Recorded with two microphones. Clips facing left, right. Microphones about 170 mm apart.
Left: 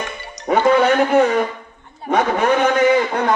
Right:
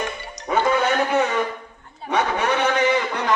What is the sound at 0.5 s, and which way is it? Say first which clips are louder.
A man's voice: left 6 dB; 55° left (ahead or behind).